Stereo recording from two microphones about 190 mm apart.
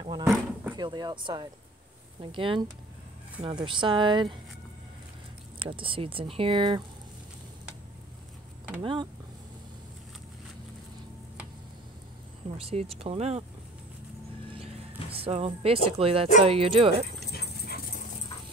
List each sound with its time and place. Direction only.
0.2 s a sound: 10° right (ahead or behind)
0.7 s speech: 25° right (ahead or behind)
5.6 s speech: 25° right (ahead or behind)
8.8 s speech: 25° right (ahead or behind)
12.5 s speech: 30° right (ahead or behind)
14.5 s a sound: 30° right (ahead or behind)
16.4 s speech: 30° right (ahead or behind)
17.3 s dog: 55° left (ahead or behind)